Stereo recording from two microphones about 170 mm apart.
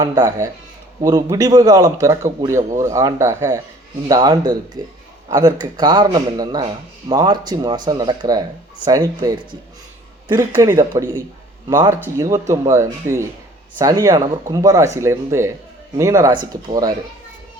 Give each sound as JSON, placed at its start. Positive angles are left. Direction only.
{"t": 0.0, "sound": "speech", "side_deg": -20}